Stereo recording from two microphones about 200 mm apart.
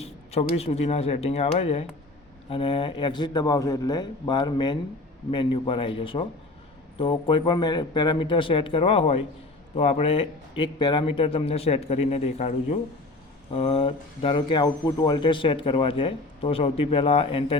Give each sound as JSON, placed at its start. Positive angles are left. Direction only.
{"t": 0.0, "sound": "speech", "side_deg": 30}